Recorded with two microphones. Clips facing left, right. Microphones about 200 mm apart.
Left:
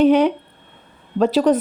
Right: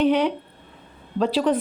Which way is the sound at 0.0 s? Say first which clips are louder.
Left 6 dB; 45° left (ahead or behind).